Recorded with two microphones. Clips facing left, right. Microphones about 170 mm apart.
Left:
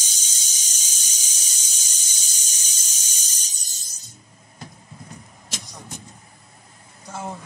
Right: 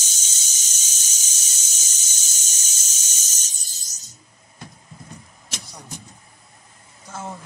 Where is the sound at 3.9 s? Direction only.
55° left (ahead or behind).